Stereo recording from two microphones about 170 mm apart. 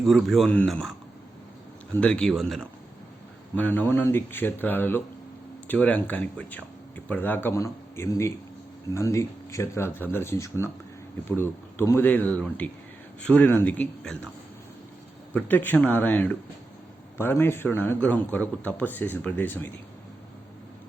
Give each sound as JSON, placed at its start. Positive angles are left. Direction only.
{"t": 0.0, "sound": "speech", "side_deg": 0}
{"t": 15.3, "sound": "speech", "side_deg": 10}